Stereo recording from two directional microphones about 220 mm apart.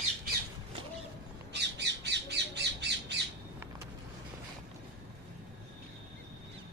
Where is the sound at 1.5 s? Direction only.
50° right (ahead or behind).